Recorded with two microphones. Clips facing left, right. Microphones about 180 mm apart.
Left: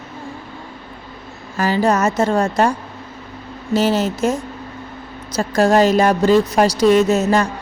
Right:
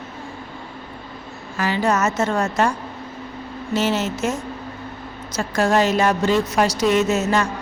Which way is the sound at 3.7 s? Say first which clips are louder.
Left 4 dB; 35° left (ahead or behind).